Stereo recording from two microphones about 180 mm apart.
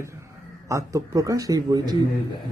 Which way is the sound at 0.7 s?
15° right (ahead or behind).